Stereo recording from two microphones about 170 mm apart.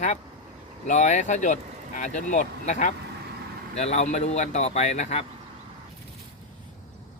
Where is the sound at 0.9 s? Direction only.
45° left (ahead or behind).